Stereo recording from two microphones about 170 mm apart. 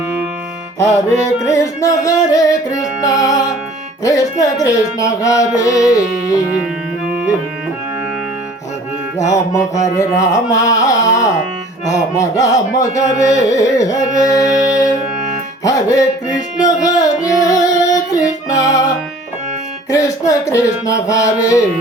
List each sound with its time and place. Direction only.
1.2 s music: 15° left (ahead or behind)
9.1 s music: 20° left (ahead or behind)
14.7 s music: 5° right (ahead or behind)
15.6 s music: 20° left (ahead or behind)
19.9 s music: 20° left (ahead or behind)